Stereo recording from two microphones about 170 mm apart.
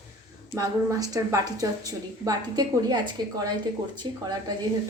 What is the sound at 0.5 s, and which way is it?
A woman's voice, 20° right (ahead or behind).